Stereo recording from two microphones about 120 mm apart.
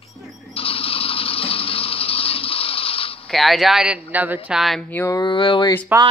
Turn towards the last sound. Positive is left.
turn(degrees=-15)  # may be behind; listen again after turning